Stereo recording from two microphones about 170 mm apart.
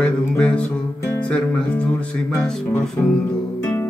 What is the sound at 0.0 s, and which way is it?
Music, 5° left (ahead or behind).